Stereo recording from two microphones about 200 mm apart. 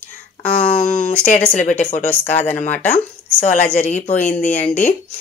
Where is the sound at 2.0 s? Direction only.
10° left (ahead or behind).